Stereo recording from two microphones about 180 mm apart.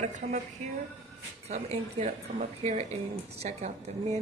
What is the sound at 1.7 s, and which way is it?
Speech, 35° right (ahead or behind).